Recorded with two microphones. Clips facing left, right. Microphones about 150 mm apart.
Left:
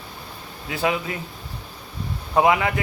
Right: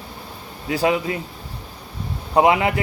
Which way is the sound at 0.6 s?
35° right (ahead or behind).